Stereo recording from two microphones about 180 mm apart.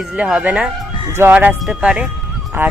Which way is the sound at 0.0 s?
Centre (ahead or behind).